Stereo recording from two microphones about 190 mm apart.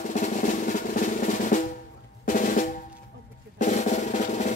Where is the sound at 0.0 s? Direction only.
40° left (ahead or behind).